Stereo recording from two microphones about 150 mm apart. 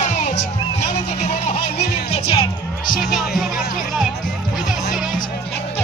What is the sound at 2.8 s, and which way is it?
Speech, 65° left (ahead or behind).